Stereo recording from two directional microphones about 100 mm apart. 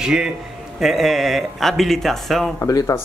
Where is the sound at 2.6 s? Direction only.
35° left (ahead or behind).